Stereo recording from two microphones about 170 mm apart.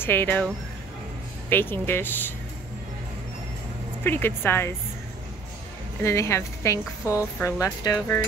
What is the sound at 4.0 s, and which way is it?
Speech, 10° left (ahead or behind).